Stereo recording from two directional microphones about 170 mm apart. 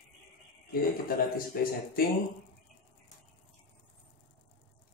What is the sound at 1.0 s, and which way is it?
Speech, 60° left (ahead or behind).